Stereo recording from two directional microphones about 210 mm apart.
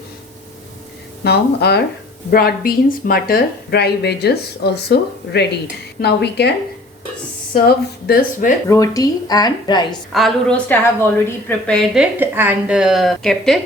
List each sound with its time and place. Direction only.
1.2 s a woman's voice: 50° left (ahead or behind)
7.5 s a woman's voice: 45° left (ahead or behind)
8.7 s a woman's voice: 15° left (ahead or behind)
10.1 s a woman's voice: centre (ahead or behind)
12.2 s a woman's voice: 10° right (ahead or behind)